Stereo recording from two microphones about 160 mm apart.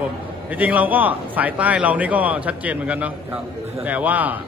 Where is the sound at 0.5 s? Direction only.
10° right (ahead or behind).